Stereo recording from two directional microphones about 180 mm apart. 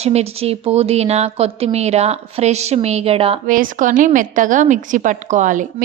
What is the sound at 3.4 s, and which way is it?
A woman's voice, 50° right (ahead or behind).